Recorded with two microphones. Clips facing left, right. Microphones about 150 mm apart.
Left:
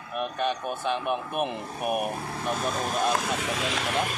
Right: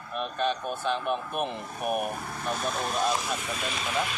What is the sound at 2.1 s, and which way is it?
Speech, 30° left (ahead or behind).